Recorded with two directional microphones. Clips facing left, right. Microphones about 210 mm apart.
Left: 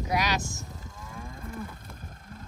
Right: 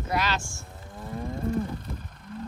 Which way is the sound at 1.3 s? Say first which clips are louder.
Right 14 dB; 35° right (ahead or behind).